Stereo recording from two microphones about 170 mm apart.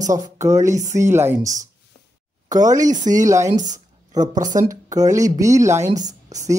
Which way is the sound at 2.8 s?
50° right (ahead or behind).